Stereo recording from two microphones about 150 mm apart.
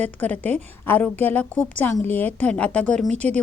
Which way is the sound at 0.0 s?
10° left (ahead or behind).